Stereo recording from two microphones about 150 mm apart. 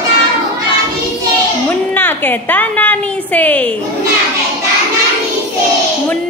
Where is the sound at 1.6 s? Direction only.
15° left (ahead or behind).